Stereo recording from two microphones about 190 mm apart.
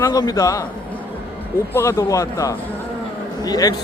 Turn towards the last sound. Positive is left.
turn(degrees=20)  # may be behind; listen again after turning